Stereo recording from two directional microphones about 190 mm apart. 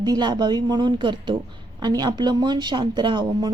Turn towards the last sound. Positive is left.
turn(degrees=-25)  # may be behind; listen again after turning